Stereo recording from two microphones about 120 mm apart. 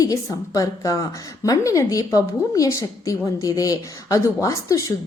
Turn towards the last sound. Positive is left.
turn(degrees=25)  # may be behind; listen again after turning